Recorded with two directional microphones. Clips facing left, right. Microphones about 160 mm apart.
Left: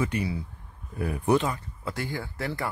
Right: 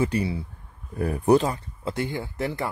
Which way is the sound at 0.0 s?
30° right (ahead or behind).